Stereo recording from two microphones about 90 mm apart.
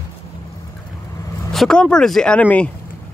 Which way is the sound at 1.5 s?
5° left (ahead or behind).